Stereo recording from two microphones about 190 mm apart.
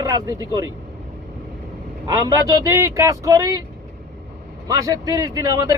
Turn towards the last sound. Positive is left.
turn(degrees=-20)  # may be behind; listen again after turning